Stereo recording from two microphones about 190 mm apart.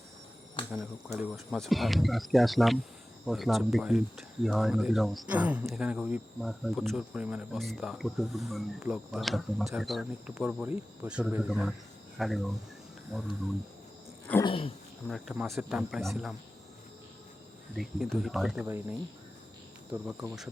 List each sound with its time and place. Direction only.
0.7 s speech: 5° right (ahead or behind)
12.1 s cricket: centre (ahead or behind)
14.4 s dog: 30° left (ahead or behind)
15.1 s speech: centre (ahead or behind)
17.7 s speech: centre (ahead or behind)